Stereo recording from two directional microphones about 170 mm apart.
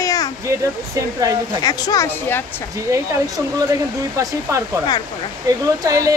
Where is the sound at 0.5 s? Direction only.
20° right (ahead or behind).